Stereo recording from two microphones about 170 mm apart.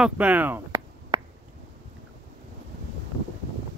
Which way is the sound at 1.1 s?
30° right (ahead or behind).